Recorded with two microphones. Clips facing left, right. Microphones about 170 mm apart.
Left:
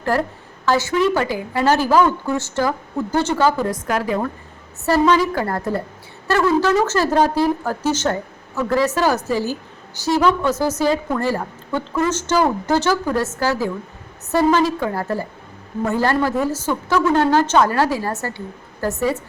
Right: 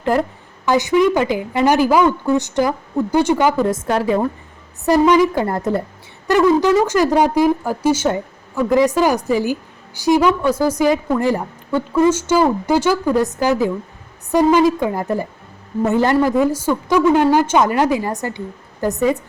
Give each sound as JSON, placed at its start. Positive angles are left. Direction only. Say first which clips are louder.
{"t": 0.6, "sound": "speech", "louder": "right 3 dB", "side_deg": -15}
{"t": 4.9, "sound": "a woman's voice", "louder": "right 3 dB", "side_deg": -15}